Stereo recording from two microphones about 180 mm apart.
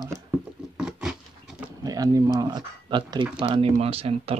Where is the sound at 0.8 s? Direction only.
5° right (ahead or behind).